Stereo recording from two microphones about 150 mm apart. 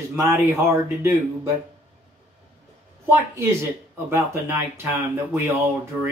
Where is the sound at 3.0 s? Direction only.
20° right (ahead or behind).